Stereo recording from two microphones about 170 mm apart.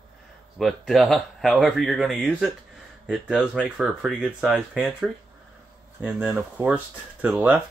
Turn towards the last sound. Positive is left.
turn(degrees=-10)  # may be behind; listen again after turning